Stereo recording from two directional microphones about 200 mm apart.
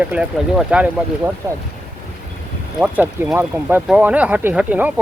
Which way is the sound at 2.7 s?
10° right (ahead or behind).